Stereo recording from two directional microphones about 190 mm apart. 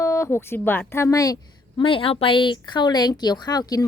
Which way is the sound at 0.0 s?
15° left (ahead or behind).